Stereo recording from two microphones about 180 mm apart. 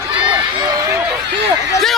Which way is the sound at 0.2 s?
25° right (ahead or behind).